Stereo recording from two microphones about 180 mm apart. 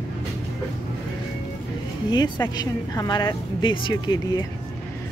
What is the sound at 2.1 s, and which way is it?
Speech, 20° left (ahead or behind).